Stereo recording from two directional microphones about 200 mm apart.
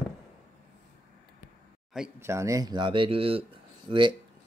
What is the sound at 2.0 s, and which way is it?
Speech, 10° right (ahead or behind).